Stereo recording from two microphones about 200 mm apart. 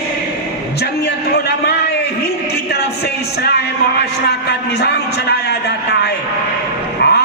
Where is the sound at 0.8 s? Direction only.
55° left (ahead or behind).